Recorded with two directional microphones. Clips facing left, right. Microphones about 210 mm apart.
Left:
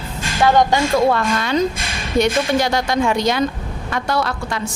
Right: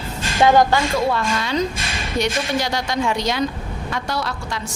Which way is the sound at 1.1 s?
55° left (ahead or behind).